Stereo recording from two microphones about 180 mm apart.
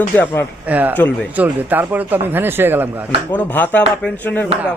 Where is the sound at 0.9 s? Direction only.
10° left (ahead or behind).